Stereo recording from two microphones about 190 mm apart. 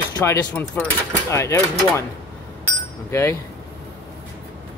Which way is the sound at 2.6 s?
15° left (ahead or behind).